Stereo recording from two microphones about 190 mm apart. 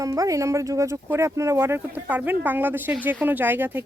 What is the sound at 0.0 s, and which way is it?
Speech, 15° right (ahead or behind).